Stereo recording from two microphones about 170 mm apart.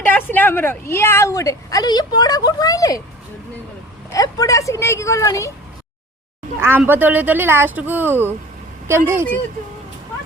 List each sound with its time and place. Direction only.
0.0 s a woman's voice: 10° left (ahead or behind)
4.1 s a woman's voice: 20° left (ahead or behind)
6.6 s speech: 15° right (ahead or behind)